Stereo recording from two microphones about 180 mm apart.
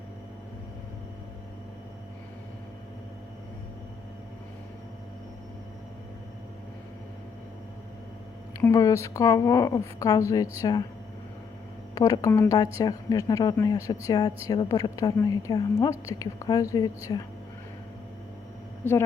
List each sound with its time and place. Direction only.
8.6 s a woman's voice: 15° left (ahead or behind)
11.9 s speech: 20° left (ahead or behind)
18.8 s a woman's voice: 10° left (ahead or behind)